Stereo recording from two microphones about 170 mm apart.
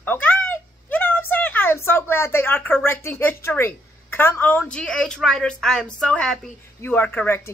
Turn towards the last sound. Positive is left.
turn(degrees=10)  # may be behind; listen again after turning